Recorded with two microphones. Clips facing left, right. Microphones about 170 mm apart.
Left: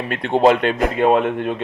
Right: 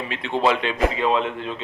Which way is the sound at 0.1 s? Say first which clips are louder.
Left 7 dB; 50° left (ahead or behind).